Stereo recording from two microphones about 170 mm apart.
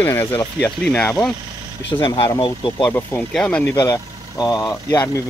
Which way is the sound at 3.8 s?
20° left (ahead or behind).